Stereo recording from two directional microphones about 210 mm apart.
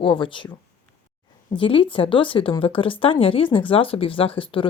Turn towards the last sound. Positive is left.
turn(degrees=25)  # may be behind; listen again after turning